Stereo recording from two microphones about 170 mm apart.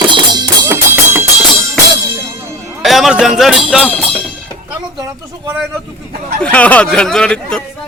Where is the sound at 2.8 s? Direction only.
Centre (ahead or behind).